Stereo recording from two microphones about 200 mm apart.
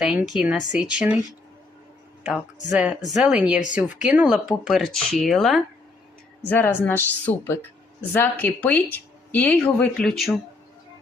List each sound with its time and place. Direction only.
0.0 s speech: 5° right (ahead or behind)
2.7 s speech: 5° right (ahead or behind)